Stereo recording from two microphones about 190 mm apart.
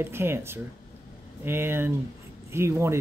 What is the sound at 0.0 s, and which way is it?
Speech, 15° right (ahead or behind).